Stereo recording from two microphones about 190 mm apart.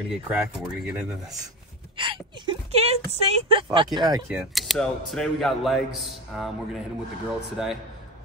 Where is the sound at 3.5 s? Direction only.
25° right (ahead or behind).